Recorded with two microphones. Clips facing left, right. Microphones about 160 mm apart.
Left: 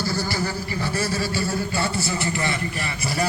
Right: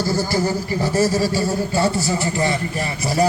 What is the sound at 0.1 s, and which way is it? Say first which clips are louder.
Speech: right 6 dB; 45° right (ahead or behind).